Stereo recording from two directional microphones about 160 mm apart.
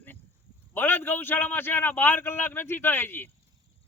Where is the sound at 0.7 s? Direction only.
10° left (ahead or behind).